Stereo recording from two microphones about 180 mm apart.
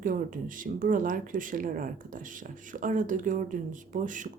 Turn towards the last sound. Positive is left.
turn(degrees=-45)  # may be behind; listen again after turning